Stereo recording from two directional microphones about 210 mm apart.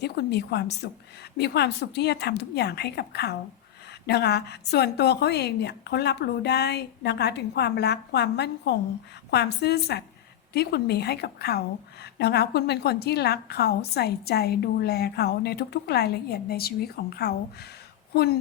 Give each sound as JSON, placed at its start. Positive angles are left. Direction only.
{"t": 0.0, "sound": "a woman's voice", "side_deg": 50}